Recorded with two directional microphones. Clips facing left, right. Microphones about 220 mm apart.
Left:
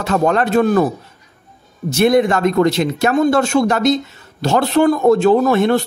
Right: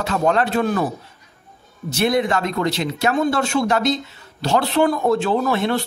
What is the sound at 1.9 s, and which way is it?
Speech, 50° left (ahead or behind).